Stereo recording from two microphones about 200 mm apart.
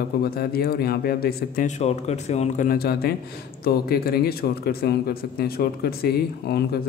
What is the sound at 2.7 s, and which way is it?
Speech, 50° left (ahead or behind).